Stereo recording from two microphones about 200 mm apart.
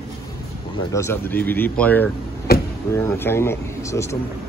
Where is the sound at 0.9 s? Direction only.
10° left (ahead or behind).